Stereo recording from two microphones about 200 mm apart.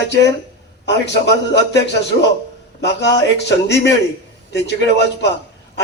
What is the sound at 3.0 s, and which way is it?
Speech, 60° left (ahead or behind).